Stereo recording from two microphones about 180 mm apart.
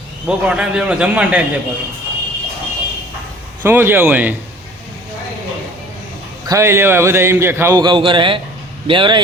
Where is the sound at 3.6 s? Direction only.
10° right (ahead or behind).